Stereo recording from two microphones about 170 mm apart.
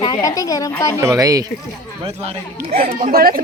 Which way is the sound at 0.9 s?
20° right (ahead or behind).